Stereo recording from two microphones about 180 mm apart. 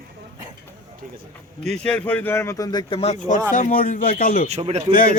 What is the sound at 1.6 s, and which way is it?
Speech, 5° left (ahead or behind).